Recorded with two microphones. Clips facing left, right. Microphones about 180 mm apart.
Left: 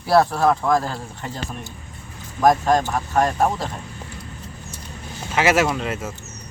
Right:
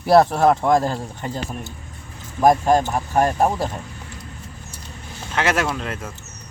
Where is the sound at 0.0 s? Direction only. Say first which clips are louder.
Right 3 dB; 20° right (ahead or behind).